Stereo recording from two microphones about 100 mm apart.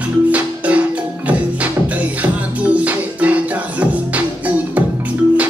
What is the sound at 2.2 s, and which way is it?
Music, 15° right (ahead or behind).